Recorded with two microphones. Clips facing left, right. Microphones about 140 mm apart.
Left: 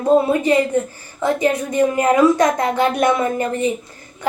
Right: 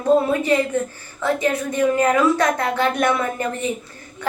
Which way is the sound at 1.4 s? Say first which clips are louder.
Left 3 dB; 25° left (ahead or behind).